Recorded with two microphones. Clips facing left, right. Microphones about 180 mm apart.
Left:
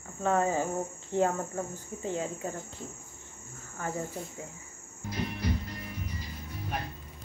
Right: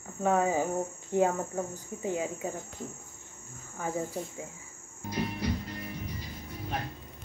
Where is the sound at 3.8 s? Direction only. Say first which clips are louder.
Right 1 dB; 10° right (ahead or behind).